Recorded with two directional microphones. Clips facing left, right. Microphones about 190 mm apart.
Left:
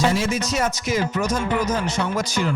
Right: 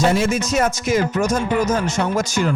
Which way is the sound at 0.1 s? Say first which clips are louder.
Right 4 dB; 50° right (ahead or behind).